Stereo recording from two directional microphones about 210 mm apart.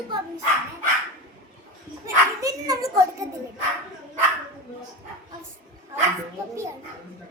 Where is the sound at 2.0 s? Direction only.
15° right (ahead or behind).